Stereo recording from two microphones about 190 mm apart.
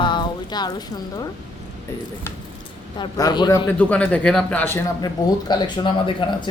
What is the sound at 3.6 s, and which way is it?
A man's voice, 5° left (ahead or behind).